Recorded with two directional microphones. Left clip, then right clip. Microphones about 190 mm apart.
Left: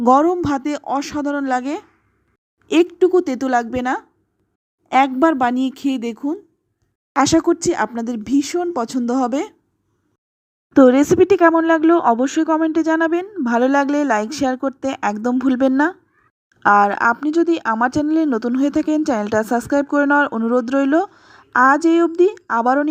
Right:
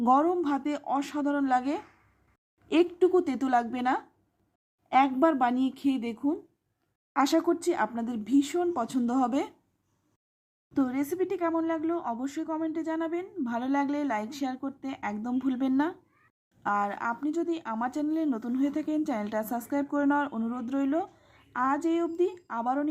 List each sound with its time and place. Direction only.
0.0 s speech: 30° left (ahead or behind)
10.8 s speech: 35° left (ahead or behind)